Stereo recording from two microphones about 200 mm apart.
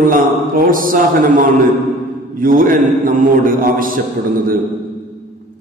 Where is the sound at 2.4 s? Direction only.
45° right (ahead or behind).